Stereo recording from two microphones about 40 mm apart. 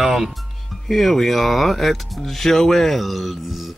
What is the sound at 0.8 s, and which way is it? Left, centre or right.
Speech, centre.